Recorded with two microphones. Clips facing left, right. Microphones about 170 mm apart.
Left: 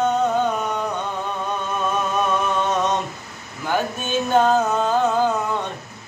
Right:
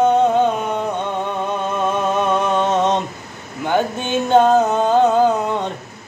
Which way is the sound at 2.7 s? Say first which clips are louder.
Right 5 dB; 25° right (ahead or behind).